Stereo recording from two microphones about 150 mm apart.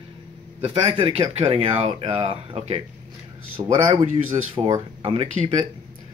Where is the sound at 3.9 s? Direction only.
50° right (ahead or behind).